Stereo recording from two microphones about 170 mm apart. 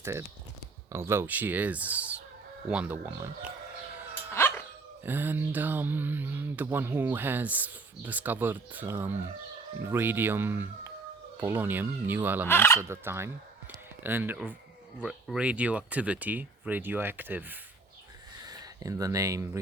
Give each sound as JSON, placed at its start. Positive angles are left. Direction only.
{"t": 0.9, "sound": "speech", "side_deg": -15}
{"t": 4.4, "sound": "dog", "side_deg": 15}
{"t": 5.0, "sound": "speech", "side_deg": -10}
{"t": 12.5, "sound": "speech", "side_deg": 15}
{"t": 12.9, "sound": "speech", "side_deg": -15}
{"t": 18.3, "sound": "a sound", "side_deg": -25}